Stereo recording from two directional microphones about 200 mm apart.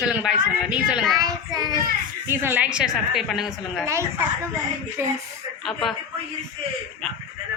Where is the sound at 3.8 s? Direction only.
15° right (ahead or behind).